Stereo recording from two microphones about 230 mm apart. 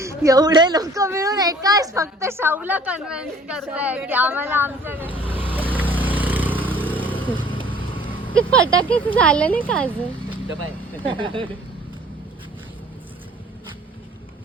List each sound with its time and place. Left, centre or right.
0.0 s a child's voice: centre
5.3 s vehicle: centre
8.4 s speech: centre
11.1 s speech: right